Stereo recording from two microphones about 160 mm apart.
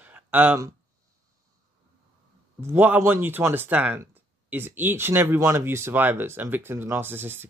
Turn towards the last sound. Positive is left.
turn(degrees=-15)  # may be behind; listen again after turning